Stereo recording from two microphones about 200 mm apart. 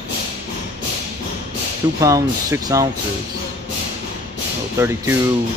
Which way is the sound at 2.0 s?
15° right (ahead or behind).